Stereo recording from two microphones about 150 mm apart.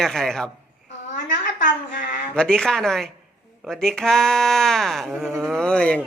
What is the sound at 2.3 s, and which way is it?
A man's voice, 5° left (ahead or behind).